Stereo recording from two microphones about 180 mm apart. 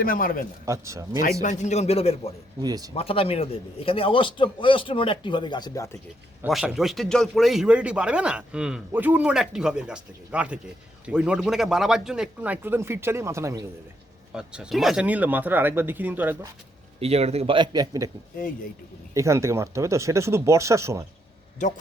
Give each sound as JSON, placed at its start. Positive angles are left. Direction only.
{"t": 0.0, "sound": "a man's voice", "side_deg": 50}
{"t": 0.6, "sound": "speech", "side_deg": -15}
{"t": 1.2, "sound": "a man's voice", "side_deg": 40}
{"t": 2.6, "sound": "a man's voice", "side_deg": -20}
{"t": 2.9, "sound": "a man's voice", "side_deg": 30}
{"t": 6.5, "sound": "speech", "side_deg": 0}
{"t": 14.3, "sound": "speech", "side_deg": -5}
{"t": 17.0, "sound": "a man's voice", "side_deg": -35}
{"t": 19.1, "sound": "speech", "side_deg": -15}
{"t": 21.6, "sound": "a man's voice", "side_deg": 45}